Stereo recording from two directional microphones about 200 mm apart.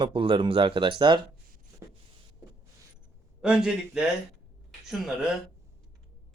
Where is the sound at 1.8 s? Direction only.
15° right (ahead or behind).